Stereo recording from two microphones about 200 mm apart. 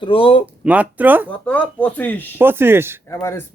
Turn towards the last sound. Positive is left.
turn(degrees=15)  # may be behind; listen again after turning